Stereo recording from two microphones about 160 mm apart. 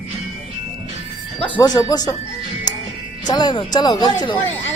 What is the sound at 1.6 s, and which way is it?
Speech, 25° left (ahead or behind).